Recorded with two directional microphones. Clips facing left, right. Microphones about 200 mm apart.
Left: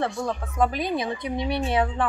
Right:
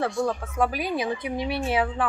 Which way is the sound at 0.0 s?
5° right (ahead or behind).